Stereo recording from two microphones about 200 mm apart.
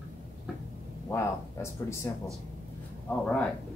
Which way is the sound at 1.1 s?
15° left (ahead or behind).